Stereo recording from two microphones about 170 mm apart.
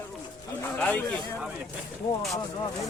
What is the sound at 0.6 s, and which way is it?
Speech, 10° left (ahead or behind).